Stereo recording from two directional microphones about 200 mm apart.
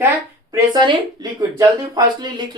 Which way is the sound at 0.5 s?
20° right (ahead or behind).